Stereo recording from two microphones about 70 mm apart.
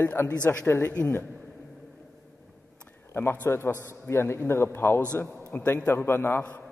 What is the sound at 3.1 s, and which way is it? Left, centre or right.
A man's voice, left.